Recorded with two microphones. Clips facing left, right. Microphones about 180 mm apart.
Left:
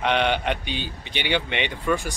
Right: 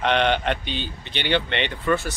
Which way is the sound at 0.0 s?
10° left (ahead or behind).